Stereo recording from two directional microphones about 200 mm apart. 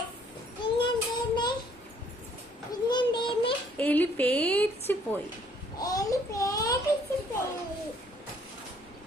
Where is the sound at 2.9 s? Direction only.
20° left (ahead or behind).